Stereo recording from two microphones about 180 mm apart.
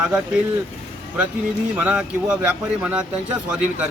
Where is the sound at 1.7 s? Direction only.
5° right (ahead or behind).